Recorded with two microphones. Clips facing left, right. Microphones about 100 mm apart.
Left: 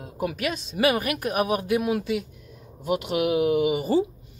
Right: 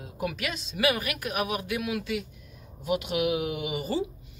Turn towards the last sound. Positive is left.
turn(degrees=40)  # may be behind; listen again after turning